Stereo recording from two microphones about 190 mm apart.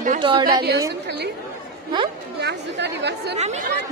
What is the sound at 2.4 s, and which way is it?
Speech, 60° right (ahead or behind).